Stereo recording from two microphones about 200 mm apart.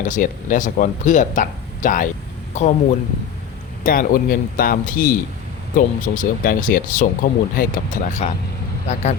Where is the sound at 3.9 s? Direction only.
45° left (ahead or behind).